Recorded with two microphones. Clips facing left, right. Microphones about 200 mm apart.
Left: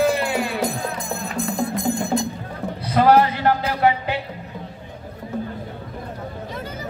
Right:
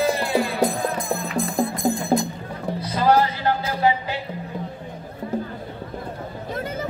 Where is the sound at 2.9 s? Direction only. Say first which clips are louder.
Left 4 dB; 60° left (ahead or behind).